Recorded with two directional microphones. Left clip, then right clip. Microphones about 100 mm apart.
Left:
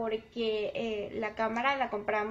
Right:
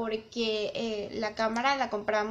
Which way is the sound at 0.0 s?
30° right (ahead or behind).